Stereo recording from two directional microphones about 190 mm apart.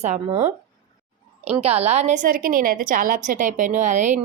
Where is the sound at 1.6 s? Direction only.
35° right (ahead or behind).